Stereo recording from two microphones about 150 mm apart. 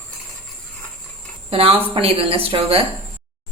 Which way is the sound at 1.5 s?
40° right (ahead or behind).